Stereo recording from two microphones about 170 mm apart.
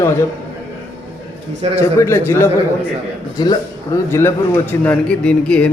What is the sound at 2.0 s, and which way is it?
A man's voice, 15° left (ahead or behind).